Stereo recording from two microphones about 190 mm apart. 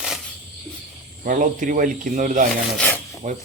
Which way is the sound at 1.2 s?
45° right (ahead or behind).